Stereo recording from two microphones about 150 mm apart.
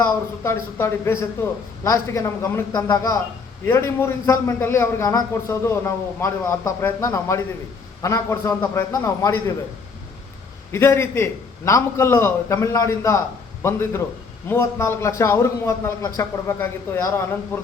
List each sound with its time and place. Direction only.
0.0 s a man's voice: 15° left (ahead or behind)
10.7 s a man's voice: 15° left (ahead or behind)